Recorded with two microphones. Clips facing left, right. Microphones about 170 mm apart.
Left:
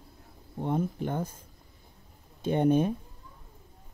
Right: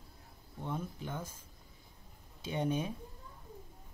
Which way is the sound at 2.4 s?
55° left (ahead or behind).